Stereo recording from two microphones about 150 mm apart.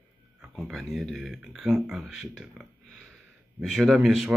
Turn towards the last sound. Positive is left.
turn(degrees=0)  # may be behind; listen again after turning